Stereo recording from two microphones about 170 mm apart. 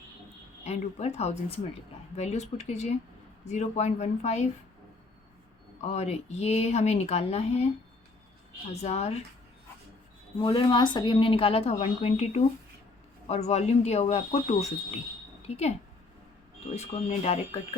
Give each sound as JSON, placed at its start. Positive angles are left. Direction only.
{"t": 0.6, "sound": "speech", "side_deg": 40}
{"t": 5.8, "sound": "speech", "side_deg": 40}
{"t": 8.7, "sound": "speech", "side_deg": 40}
{"t": 10.3, "sound": "a woman's voice", "side_deg": 30}
{"t": 16.7, "sound": "speech", "side_deg": 40}